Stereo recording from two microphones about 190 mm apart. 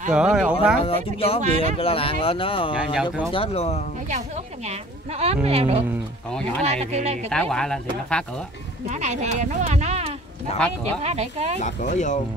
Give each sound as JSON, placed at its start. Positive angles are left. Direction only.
{"t": 0.1, "sound": "speech", "side_deg": -5}
{"t": 0.8, "sound": "speech", "side_deg": 30}
{"t": 1.4, "sound": "speech", "side_deg": -40}
{"t": 1.8, "sound": "speech", "side_deg": 30}
{"t": 2.7, "sound": "speech", "side_deg": -5}
{"t": 3.3, "sound": "speech", "side_deg": 30}
{"t": 4.6, "sound": "speech", "side_deg": -35}
{"t": 7.2, "sound": "speech", "side_deg": 5}
{"t": 8.8, "sound": "speech", "side_deg": -35}
{"t": 11.6, "sound": "speech", "side_deg": 40}